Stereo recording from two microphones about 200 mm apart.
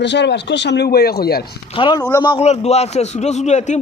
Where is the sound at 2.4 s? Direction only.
30° left (ahead or behind).